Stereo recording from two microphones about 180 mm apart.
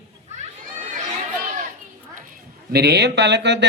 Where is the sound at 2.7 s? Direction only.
65° right (ahead or behind).